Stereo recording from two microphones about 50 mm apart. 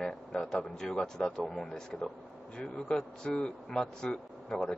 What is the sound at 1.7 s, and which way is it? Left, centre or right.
A man's voice, centre.